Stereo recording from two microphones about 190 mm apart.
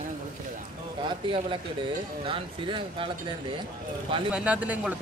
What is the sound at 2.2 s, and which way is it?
Speech, 25° right (ahead or behind).